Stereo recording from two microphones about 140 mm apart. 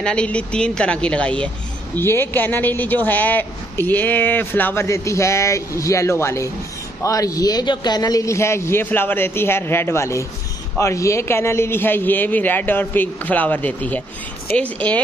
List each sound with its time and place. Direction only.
0.0 s a man's voice: 10° left (ahead or behind)